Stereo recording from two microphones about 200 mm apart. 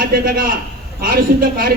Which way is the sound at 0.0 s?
45° right (ahead or behind).